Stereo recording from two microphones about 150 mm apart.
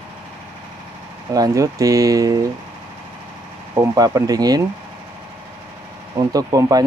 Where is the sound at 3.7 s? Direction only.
25° right (ahead or behind).